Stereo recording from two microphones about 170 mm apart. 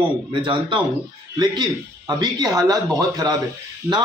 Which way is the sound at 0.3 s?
30° right (ahead or behind).